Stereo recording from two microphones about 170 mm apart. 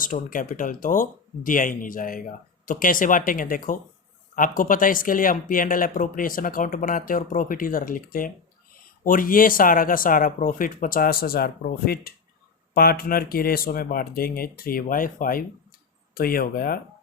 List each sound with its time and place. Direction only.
0.0 s speech: 50° left (ahead or behind)